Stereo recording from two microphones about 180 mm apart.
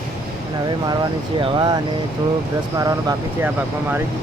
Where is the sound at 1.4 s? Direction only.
25° right (ahead or behind).